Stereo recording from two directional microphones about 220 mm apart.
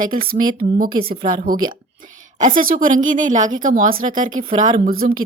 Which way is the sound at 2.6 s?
40° right (ahead or behind).